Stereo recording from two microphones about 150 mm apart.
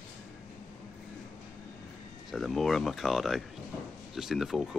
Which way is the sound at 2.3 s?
Centre (ahead or behind).